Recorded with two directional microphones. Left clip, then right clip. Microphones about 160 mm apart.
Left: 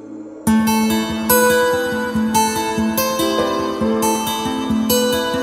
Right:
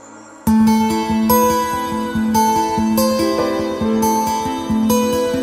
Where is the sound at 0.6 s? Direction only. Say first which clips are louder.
Right 2 dB; 35° right (ahead or behind).